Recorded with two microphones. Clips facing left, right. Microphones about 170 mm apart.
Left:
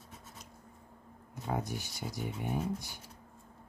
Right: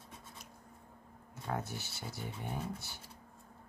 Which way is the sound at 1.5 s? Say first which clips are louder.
Left 3 dB; 15° left (ahead or behind).